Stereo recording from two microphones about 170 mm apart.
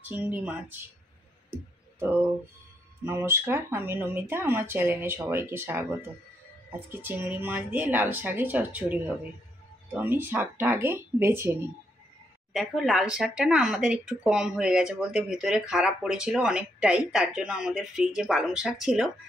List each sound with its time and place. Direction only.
0.1 s speech: 10° right (ahead or behind)
3.1 s speech: 15° right (ahead or behind)
12.5 s speech: centre (ahead or behind)